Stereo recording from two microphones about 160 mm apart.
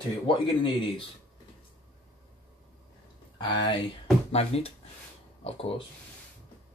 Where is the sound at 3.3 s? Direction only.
25° left (ahead or behind).